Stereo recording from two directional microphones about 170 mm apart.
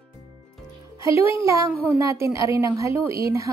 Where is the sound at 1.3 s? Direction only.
15° right (ahead or behind).